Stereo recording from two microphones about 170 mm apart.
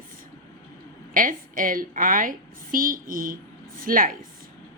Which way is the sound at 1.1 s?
55° right (ahead or behind).